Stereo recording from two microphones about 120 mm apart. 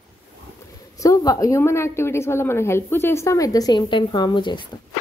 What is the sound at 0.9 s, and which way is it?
A woman's voice, 30° left (ahead or behind).